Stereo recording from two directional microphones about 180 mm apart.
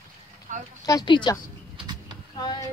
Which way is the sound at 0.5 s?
45° right (ahead or behind).